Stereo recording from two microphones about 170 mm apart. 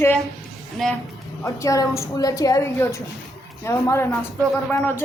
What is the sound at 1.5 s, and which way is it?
A woman's voice, 15° left (ahead or behind).